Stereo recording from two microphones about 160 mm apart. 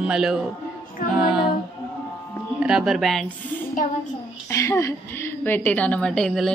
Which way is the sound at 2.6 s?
5° right (ahead or behind).